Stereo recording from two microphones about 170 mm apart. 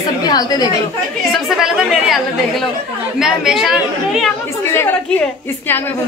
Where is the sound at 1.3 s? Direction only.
Centre (ahead or behind).